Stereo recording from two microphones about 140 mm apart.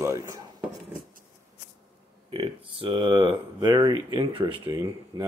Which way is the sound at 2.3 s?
40° right (ahead or behind).